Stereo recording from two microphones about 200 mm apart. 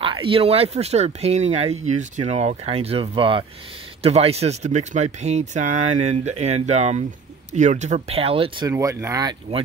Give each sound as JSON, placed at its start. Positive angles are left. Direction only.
{"t": 0.0, "sound": "speech", "side_deg": -25}
{"t": 8.6, "sound": "speech", "side_deg": -15}